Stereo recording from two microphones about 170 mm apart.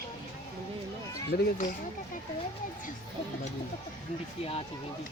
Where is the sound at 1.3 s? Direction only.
65° left (ahead or behind).